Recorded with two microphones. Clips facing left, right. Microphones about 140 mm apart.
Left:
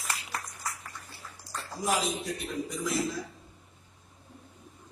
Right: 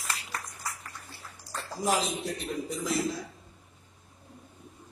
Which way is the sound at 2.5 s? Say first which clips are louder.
Even; 30° right (ahead or behind).